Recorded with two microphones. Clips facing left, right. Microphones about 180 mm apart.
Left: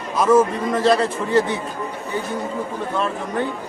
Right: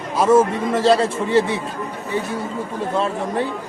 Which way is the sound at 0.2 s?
25° right (ahead or behind).